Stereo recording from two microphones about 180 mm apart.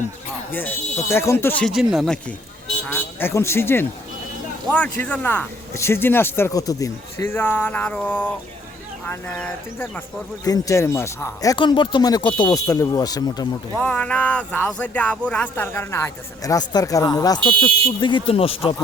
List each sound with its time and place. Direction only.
0.5 s speech: 10° left (ahead or behind)
1.7 s speech: 5° right (ahead or behind)
2.9 s speech: 10° left (ahead or behind)
13.7 s speech: 5° left (ahead or behind); by 18.7 s 30° left (ahead or behind)